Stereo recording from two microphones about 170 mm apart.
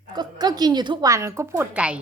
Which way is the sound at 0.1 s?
25° right (ahead or behind).